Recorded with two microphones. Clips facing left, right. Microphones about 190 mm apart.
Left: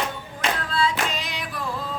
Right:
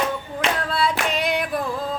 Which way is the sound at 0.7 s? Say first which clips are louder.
Right 2 dB; 65° right (ahead or behind).